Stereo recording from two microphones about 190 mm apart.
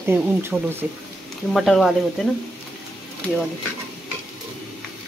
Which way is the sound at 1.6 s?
Centre (ahead or behind).